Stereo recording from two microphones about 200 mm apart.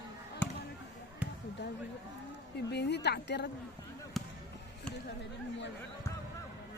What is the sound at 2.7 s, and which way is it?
Speech, 60° left (ahead or behind).